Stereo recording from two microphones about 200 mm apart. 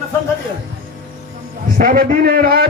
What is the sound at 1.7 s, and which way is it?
Speech, 45° right (ahead or behind).